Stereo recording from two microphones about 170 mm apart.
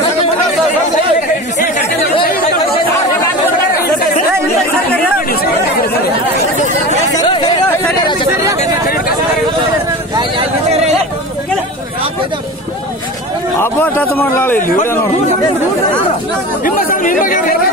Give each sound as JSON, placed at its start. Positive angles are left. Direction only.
{"t": 7.2, "sound": "chatter", "side_deg": 25}
{"t": 8.8, "sound": "chatter", "side_deg": 60}
{"t": 10.7, "sound": "a sound", "side_deg": -40}
{"t": 13.6, "sound": "a man's voice", "side_deg": 10}
{"t": 16.6, "sound": "speech", "side_deg": 55}